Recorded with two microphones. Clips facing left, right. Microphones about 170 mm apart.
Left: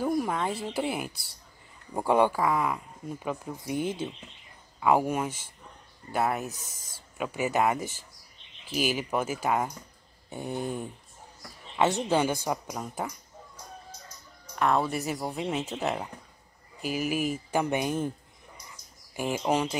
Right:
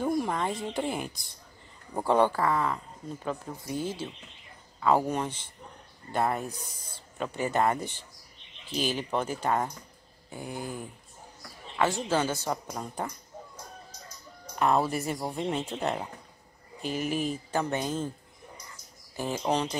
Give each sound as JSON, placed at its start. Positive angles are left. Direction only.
{"t": 0.0, "sound": "speech", "side_deg": 5}
{"t": 10.3, "sound": "a sound", "side_deg": 25}
{"t": 11.8, "sound": "speech", "side_deg": 20}
{"t": 14.6, "sound": "speech", "side_deg": -5}
{"t": 19.1, "sound": "speech", "side_deg": 10}